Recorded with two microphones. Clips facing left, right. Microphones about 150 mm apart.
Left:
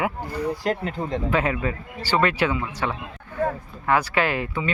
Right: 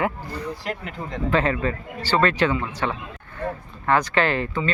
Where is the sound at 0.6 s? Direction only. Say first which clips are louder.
Left 6 dB; 35° left (ahead or behind).